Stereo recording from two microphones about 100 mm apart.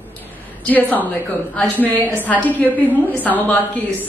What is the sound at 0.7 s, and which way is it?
A woman's voice, 15° left (ahead or behind).